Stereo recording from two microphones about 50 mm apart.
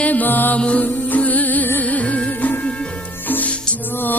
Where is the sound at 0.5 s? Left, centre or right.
Left.